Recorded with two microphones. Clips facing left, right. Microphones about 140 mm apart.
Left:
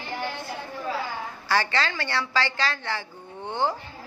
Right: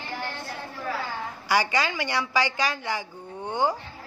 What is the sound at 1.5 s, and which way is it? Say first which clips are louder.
A woman's voice: right 1 dB; 15° right (ahead or behind).